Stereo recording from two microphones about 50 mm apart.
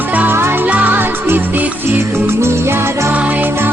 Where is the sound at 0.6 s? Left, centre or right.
Right.